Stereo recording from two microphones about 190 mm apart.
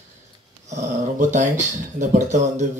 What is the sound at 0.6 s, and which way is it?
A man's voice, 40° right (ahead or behind).